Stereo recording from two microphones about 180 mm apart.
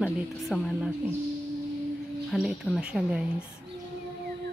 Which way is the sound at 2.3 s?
Centre (ahead or behind).